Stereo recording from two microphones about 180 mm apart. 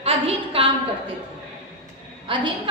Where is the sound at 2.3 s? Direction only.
30° right (ahead or behind).